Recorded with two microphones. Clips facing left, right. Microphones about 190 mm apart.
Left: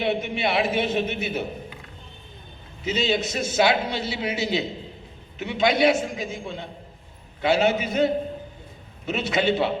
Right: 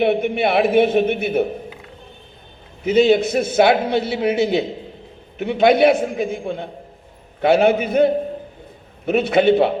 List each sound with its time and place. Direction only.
0.0 s a man's voice: 55° right (ahead or behind)
2.8 s a man's voice: 55° right (ahead or behind)